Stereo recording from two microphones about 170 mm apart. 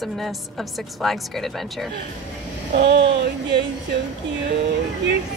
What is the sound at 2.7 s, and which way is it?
Speech, 90° right.